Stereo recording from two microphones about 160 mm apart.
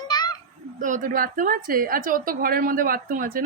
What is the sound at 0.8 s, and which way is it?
A woman's voice, 55° right (ahead or behind).